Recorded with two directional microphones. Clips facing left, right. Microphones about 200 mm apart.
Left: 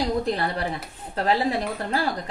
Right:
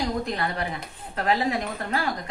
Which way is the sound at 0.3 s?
35° left (ahead or behind).